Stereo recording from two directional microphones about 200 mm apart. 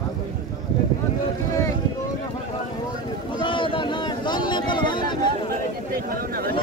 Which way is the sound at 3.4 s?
25° left (ahead or behind).